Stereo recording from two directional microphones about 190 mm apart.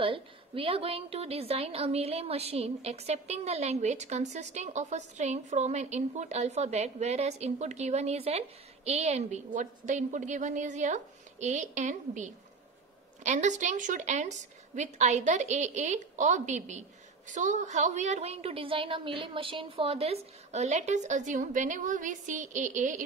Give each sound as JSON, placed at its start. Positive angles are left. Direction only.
{"t": 0.0, "sound": "a woman's voice", "side_deg": -30}